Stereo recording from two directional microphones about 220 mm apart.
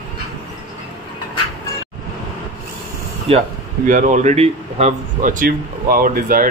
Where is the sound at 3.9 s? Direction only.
35° right (ahead or behind).